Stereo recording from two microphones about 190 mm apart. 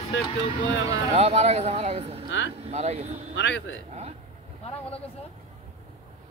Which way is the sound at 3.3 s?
70° left (ahead or behind).